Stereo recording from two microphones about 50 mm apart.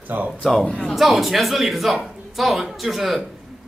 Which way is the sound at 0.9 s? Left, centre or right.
Centre.